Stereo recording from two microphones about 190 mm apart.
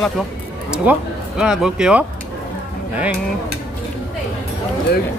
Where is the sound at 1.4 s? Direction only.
5° right (ahead or behind).